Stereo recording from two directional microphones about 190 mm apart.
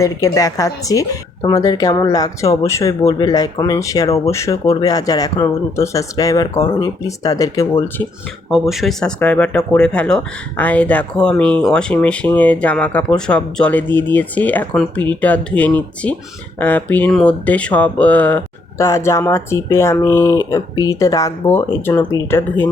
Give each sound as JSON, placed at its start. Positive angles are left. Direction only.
{"t": 0.0, "sound": "speech", "side_deg": 15}
{"t": 8.4, "sound": "speech", "side_deg": 0}